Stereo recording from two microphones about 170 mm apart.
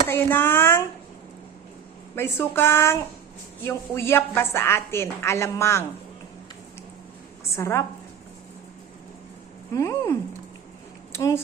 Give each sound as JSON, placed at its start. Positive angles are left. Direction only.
{"t": 0.1, "sound": "a woman's voice", "side_deg": 10}
{"t": 2.1, "sound": "a woman's voice", "side_deg": 15}
{"t": 7.5, "sound": "a woman's voice", "side_deg": 15}
{"t": 9.7, "sound": "a sound", "side_deg": 20}
{"t": 11.1, "sound": "speech", "side_deg": 15}